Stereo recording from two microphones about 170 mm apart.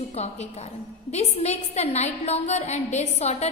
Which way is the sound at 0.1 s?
40° left (ahead or behind).